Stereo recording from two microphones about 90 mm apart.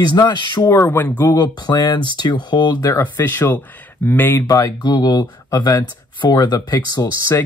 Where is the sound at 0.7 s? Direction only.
35° left (ahead or behind).